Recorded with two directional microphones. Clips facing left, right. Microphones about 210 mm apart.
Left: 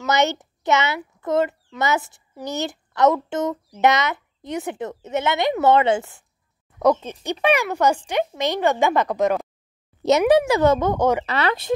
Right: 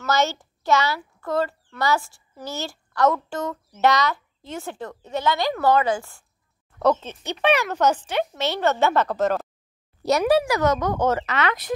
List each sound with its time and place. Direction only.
0.0 s a child's voice: 20° left (ahead or behind)
6.8 s a child's voice: 10° left (ahead or behind); by 11.0 s 25° left (ahead or behind)
11.0 s speech: 15° left (ahead or behind)
11.2 s speech: 30° left (ahead or behind)